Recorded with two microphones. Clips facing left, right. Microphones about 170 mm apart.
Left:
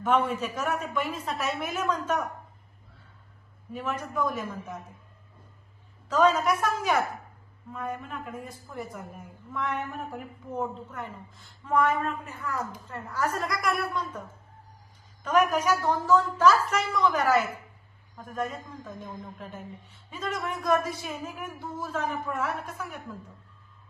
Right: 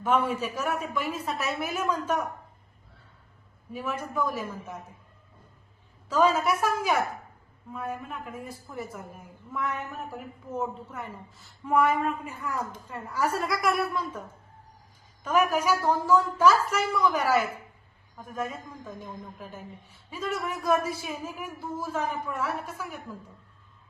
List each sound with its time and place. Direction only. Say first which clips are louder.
0.0 s speech: even; 10° right (ahead or behind)
3.7 s speech: even; 10° right (ahead or behind)
6.1 s a woman's voice: left 1 dB; 10° right (ahead or behind)